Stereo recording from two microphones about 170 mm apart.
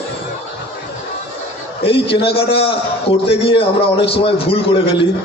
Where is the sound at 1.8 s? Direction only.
35° left (ahead or behind).